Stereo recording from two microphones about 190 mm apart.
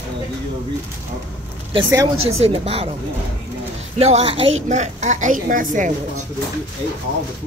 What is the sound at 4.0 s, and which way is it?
A woman's voice, 35° right (ahead or behind).